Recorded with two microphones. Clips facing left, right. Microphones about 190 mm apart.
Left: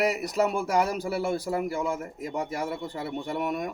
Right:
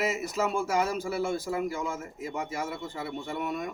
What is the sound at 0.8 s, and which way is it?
Speech, 35° left (ahead or behind).